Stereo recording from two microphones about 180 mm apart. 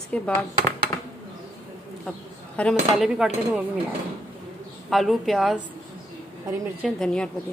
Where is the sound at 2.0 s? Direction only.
5° left (ahead or behind).